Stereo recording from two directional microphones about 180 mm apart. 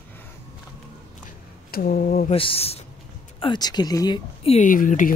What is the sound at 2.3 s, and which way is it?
Speech, 30° left (ahead or behind).